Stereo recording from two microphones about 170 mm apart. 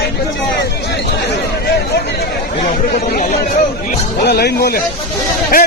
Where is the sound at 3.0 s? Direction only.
45° left (ahead or behind).